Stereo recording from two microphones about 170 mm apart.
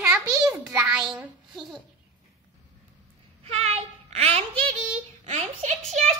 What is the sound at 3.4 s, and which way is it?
Child singing, 35° right (ahead or behind).